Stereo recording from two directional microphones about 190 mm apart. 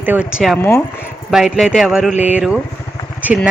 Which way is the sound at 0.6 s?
10° left (ahead or behind).